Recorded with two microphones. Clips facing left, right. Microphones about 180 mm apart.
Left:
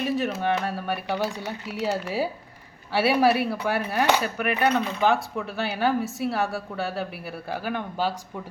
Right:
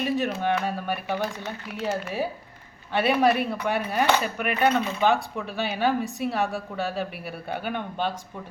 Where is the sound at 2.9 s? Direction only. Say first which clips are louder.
Left 1 dB; 5° left (ahead or behind).